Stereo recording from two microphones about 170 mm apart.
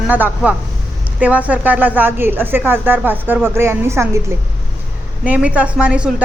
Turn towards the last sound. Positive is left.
turn(degrees=-5)  # may be behind; listen again after turning